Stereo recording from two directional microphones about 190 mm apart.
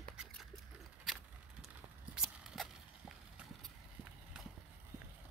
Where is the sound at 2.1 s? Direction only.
Centre (ahead or behind).